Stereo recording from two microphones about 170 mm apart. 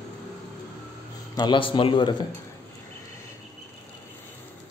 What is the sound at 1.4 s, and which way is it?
Speech, 30° left (ahead or behind).